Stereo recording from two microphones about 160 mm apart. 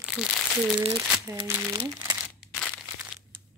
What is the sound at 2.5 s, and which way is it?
Crumpling, 5° left (ahead or behind).